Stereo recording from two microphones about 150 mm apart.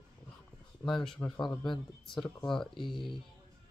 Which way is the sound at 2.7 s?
30° left (ahead or behind).